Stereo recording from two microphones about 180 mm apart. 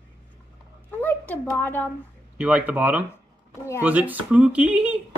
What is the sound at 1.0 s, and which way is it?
Speech, 10° left (ahead or behind).